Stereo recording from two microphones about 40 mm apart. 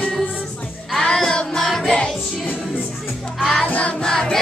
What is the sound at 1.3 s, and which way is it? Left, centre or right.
Music, left.